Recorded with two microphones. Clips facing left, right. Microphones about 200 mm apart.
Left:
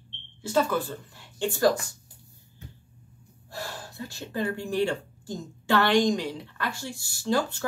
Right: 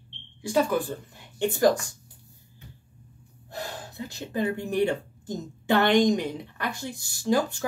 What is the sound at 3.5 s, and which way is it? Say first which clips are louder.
Speech: right 2 dB; 20° right (ahead or behind).